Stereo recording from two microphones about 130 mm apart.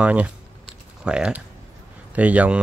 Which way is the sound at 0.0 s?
10° right (ahead or behind).